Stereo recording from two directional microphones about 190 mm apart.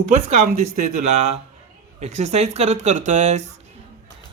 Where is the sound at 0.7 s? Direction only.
40° right (ahead or behind).